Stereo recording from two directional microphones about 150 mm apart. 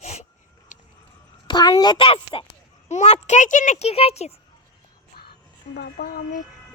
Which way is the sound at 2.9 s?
50° left (ahead or behind).